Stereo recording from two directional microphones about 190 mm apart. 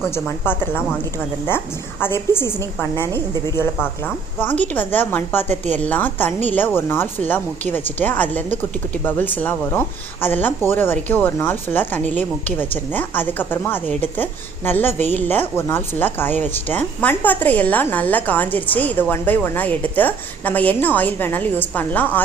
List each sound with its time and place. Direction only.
0.1 s a woman's voice: 10° left (ahead or behind)
5.5 s a woman's voice: 40° right (ahead or behind)
5.8 s a woman's voice: 10° left (ahead or behind)